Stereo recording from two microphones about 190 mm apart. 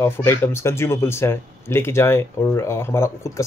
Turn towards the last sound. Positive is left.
turn(degrees=15)  # may be behind; listen again after turning